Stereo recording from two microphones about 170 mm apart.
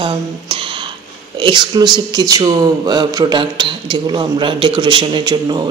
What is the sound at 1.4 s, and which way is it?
Speech, 25° right (ahead or behind).